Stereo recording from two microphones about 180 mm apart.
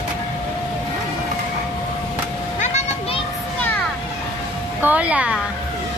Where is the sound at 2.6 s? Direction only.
40° left (ahead or behind).